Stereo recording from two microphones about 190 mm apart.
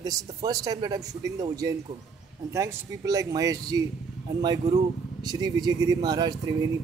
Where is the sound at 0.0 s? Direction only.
20° right (ahead or behind).